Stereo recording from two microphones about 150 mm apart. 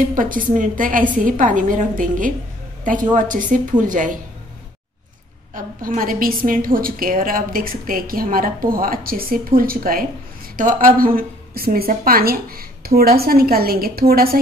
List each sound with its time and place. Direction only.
0.1 s a woman's voice: 65° right (ahead or behind)
5.5 s a woman's voice: 65° right (ahead or behind)
10.5 s a woman's voice: 60° right (ahead or behind); by 14.4 s 85° right